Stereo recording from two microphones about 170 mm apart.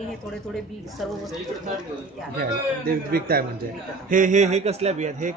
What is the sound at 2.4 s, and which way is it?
Speech, 60° right (ahead or behind).